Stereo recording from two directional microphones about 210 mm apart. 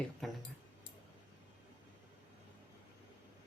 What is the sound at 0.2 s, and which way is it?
Speech, centre (ahead or behind).